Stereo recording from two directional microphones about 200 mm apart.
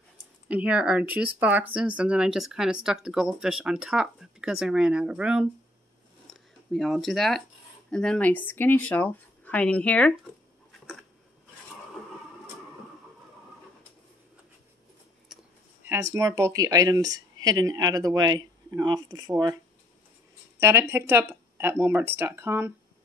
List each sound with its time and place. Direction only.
0.5 s speech: 5° right (ahead or behind)
15.3 s a sound: centre (ahead or behind)
15.8 s speech: 15° right (ahead or behind)
20.6 s speech: 10° right (ahead or behind)